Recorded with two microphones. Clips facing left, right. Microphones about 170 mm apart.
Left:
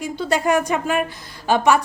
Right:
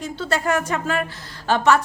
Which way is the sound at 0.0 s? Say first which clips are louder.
Left 3 dB; 15° left (ahead or behind).